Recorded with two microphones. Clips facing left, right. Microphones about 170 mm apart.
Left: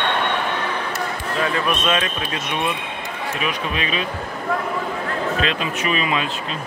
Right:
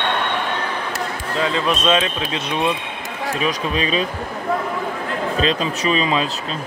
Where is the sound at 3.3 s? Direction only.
35° right (ahead or behind).